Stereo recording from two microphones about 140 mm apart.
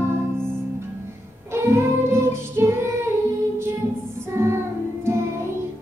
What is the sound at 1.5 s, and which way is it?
Child singing, 20° right (ahead or behind).